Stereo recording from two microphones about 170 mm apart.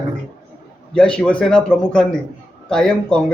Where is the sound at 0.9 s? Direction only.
5° left (ahead or behind).